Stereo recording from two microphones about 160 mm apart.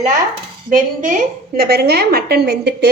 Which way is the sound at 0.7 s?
55° right (ahead or behind).